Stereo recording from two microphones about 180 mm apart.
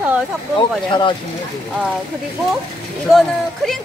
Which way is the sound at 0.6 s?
25° left (ahead or behind).